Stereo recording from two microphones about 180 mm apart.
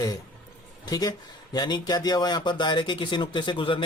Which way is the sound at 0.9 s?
20° left (ahead or behind).